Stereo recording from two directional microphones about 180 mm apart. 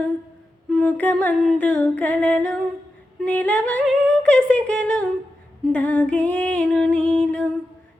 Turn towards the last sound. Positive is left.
turn(degrees=5)  # may be behind; listen again after turning